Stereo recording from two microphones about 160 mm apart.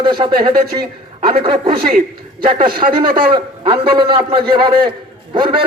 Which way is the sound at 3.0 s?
30° right (ahead or behind).